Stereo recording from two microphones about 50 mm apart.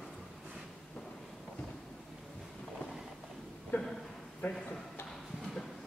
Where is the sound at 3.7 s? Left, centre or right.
Left.